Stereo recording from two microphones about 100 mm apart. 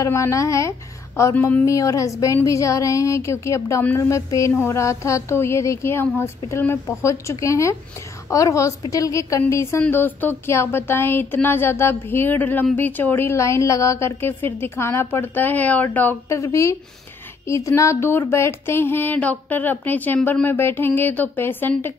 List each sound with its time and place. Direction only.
0.0 s a woman's voice: 30° left (ahead or behind)
16.3 s speech: 30° left (ahead or behind)